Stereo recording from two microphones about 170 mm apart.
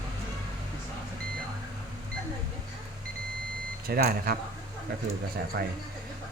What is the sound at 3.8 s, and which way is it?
Speech, 60° right (ahead or behind).